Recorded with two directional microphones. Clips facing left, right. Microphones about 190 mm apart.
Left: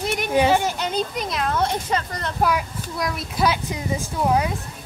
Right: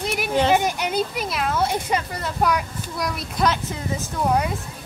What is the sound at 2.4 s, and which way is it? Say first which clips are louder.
Speech: even; 5° left (ahead or behind).